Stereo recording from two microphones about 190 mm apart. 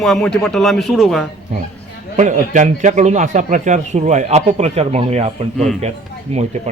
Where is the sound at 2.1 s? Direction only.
40° right (ahead or behind).